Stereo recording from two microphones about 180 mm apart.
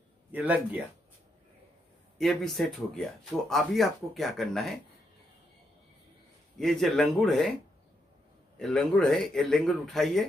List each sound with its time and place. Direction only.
0.3 s speech: 10° right (ahead or behind)
2.1 s speech: centre (ahead or behind)
6.6 s speech: centre (ahead or behind)
8.5 s speech: centre (ahead or behind)